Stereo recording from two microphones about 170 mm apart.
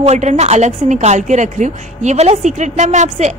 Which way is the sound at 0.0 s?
40° right (ahead or behind).